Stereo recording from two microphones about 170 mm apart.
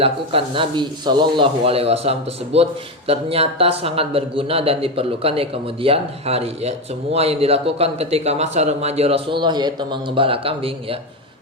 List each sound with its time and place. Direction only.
0.0 s speech: 35° right (ahead or behind)